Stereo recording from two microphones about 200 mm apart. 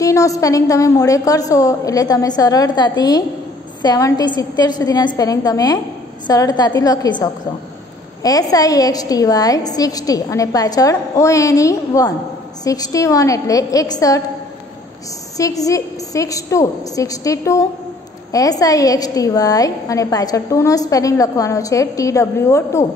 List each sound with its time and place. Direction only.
0.0 s a woman's voice: 15° left (ahead or behind)
15.3 s a woman's voice: 15° left (ahead or behind)